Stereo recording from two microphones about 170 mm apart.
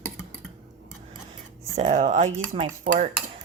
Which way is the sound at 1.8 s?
45° right (ahead or behind).